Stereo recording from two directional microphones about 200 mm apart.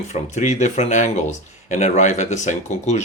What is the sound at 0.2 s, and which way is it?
Speech, 35° left (ahead or behind).